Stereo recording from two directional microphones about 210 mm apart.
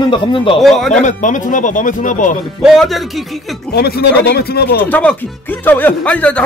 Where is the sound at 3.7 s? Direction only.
50° left (ahead or behind).